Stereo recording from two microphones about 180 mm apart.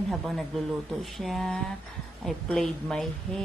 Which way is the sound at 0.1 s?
Centre (ahead or behind).